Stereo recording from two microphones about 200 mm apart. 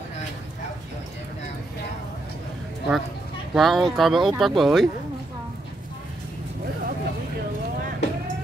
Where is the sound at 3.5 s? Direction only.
Centre (ahead or behind).